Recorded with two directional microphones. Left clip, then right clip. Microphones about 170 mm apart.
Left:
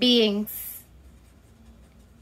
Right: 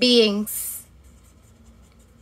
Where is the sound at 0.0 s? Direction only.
20° right (ahead or behind).